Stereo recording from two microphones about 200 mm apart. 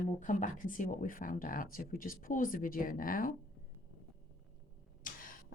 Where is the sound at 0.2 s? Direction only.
40° left (ahead or behind).